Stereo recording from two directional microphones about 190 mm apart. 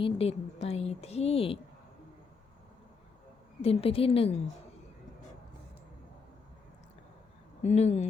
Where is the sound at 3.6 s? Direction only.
30° left (ahead or behind).